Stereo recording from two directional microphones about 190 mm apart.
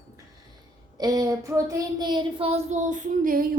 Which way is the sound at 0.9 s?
20° right (ahead or behind).